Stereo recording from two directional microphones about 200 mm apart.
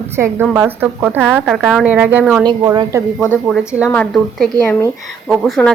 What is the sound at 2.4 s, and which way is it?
Speech, 20° right (ahead or behind).